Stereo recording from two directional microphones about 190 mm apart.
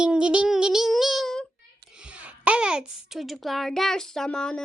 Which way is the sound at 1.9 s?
5° right (ahead or behind).